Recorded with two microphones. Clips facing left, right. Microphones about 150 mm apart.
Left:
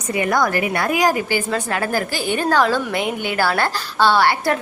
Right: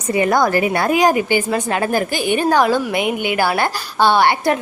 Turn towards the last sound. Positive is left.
turn(degrees=-20)  # may be behind; listen again after turning